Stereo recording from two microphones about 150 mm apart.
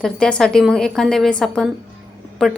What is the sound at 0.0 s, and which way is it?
A woman's voice, 5° left (ahead or behind).